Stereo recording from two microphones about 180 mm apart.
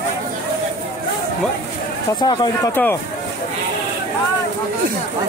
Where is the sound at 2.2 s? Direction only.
25° left (ahead or behind).